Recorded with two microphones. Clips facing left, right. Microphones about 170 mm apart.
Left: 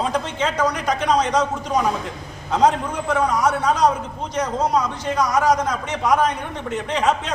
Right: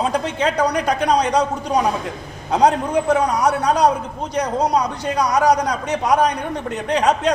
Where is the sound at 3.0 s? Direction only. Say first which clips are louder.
Even; 35° right (ahead or behind).